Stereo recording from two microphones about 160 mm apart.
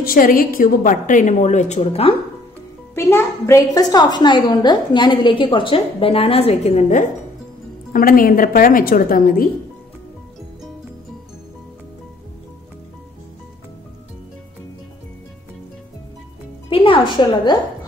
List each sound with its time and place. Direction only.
0.0 s a woman's voice: 65° left (ahead or behind); by 2.1 s 40° left (ahead or behind)
2.9 s a child's voice: 15° left (ahead or behind); by 7.1 s 45° left (ahead or behind)
7.9 s a woman's voice: 60° left (ahead or behind)
16.6 s a woman's voice: 35° left (ahead or behind)